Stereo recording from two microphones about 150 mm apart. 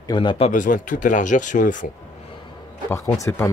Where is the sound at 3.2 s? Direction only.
20° left (ahead or behind).